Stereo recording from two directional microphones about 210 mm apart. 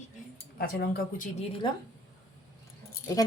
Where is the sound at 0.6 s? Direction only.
45° left (ahead or behind).